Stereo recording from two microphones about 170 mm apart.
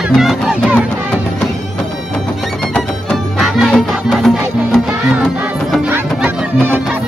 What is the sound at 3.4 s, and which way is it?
Music, centre (ahead or behind).